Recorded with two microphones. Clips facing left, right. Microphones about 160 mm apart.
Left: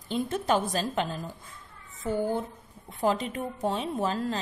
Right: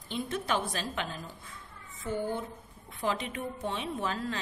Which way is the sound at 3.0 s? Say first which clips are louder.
Left 5 dB; 40° left (ahead or behind).